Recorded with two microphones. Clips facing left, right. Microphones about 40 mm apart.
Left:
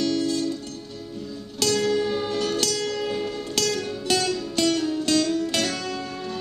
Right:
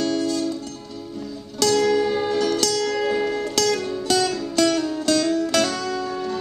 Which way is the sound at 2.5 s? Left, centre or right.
Centre.